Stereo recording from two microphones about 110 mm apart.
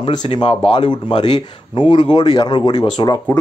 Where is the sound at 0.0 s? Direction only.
45° left (ahead or behind).